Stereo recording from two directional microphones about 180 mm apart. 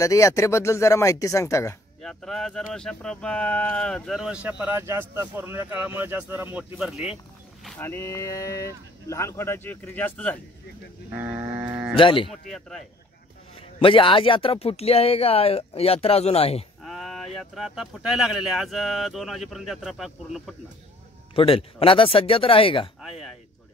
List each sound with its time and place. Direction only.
0.0 s speech: 15° left (ahead or behind)
2.0 s speech: centre (ahead or behind)
7.8 s speech: 15° left (ahead or behind)
11.1 s speech: 10° right (ahead or behind)
11.9 s speech: 30° left (ahead or behind)
12.3 s speech: centre (ahead or behind)
13.6 s speech: 30° left (ahead or behind)
16.8 s speech: centre (ahead or behind)
21.4 s speech: 30° left (ahead or behind)
23.0 s speech: centre (ahead or behind)